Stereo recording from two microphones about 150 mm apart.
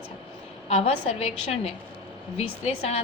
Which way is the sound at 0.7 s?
40° left (ahead or behind).